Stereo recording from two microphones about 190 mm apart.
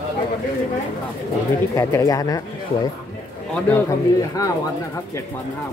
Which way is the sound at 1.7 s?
15° left (ahead or behind).